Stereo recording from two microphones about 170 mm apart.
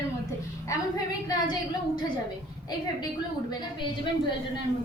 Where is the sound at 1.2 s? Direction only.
25° left (ahead or behind).